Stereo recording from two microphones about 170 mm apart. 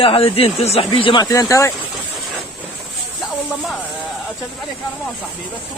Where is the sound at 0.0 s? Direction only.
35° left (ahead or behind); by 1.7 s 20° left (ahead or behind).